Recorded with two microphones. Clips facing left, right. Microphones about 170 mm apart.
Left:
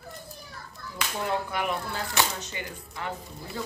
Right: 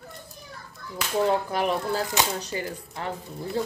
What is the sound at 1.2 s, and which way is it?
Speech, 35° right (ahead or behind).